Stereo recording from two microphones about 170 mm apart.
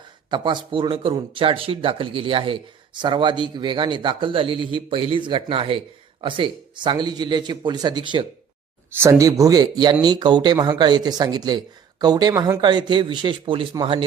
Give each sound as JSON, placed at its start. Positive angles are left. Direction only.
{"t": 0.3, "sound": "speech", "side_deg": -25}